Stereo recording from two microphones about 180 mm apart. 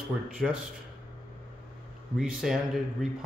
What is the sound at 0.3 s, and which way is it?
Speech, 5° right (ahead or behind).